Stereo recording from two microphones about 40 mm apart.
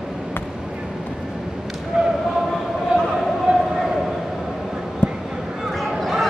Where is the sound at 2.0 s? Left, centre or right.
Centre.